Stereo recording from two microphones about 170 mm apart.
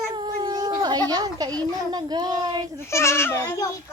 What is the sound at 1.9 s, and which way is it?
Speech, 25° right (ahead or behind).